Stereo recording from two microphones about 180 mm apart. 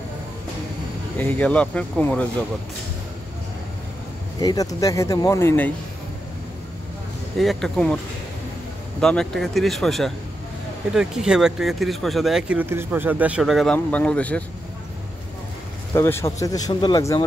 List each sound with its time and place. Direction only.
1.1 s speech: 10° left (ahead or behind)
4.4 s speech: 20° left (ahead or behind)
7.3 s speech: centre (ahead or behind)
9.0 s speech: 5° left (ahead or behind)
15.9 s speech: 15° left (ahead or behind)